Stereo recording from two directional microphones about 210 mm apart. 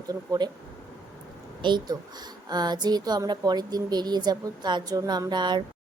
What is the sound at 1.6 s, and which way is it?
Speech, 20° right (ahead or behind).